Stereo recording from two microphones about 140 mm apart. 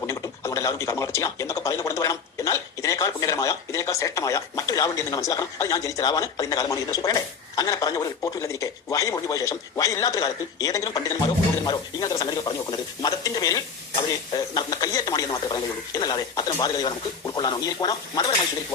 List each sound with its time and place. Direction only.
0.1 s speech: 20° left (ahead or behind)